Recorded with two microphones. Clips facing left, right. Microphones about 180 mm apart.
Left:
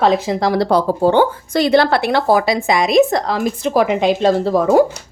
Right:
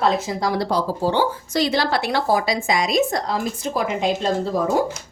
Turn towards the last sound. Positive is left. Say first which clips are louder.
# left 7 dB
turn(degrees=75)  # may be behind; listen again after turning